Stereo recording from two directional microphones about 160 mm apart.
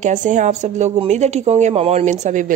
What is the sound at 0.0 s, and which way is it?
Speech, 50° right (ahead or behind).